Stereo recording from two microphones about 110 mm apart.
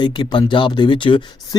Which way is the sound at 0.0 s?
45° left (ahead or behind).